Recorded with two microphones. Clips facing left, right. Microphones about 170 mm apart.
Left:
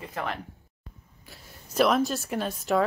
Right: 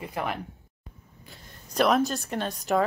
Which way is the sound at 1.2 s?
Centre (ahead or behind).